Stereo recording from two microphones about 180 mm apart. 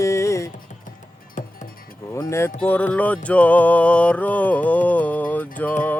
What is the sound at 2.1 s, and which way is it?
Speech, 15° left (ahead or behind).